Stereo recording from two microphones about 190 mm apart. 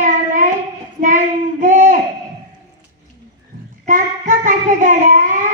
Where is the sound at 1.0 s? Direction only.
45° right (ahead or behind).